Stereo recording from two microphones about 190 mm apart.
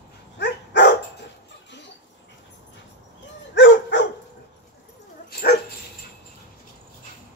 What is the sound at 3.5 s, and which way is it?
Dog, 75° left (ahead or behind).